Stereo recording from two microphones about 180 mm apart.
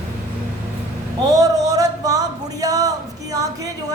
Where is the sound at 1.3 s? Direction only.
20° right (ahead or behind).